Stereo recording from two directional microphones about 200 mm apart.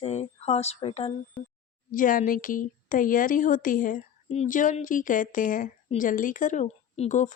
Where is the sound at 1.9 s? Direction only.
40° left (ahead or behind).